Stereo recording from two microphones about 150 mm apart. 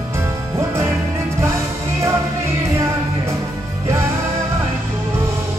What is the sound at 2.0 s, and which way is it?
Music, 20° right (ahead or behind).